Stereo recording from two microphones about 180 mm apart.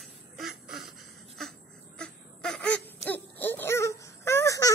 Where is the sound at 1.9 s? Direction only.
5° left (ahead or behind).